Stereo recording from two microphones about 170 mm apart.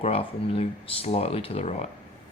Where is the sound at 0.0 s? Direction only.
35° left (ahead or behind).